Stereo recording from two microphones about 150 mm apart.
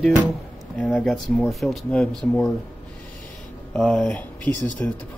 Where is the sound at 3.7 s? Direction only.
5° left (ahead or behind).